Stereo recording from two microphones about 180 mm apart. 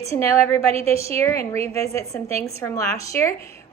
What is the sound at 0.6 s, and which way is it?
Speech, 35° right (ahead or behind).